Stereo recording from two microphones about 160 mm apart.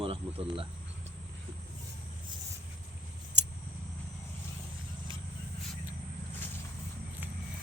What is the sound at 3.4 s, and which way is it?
Scissors, 90° right.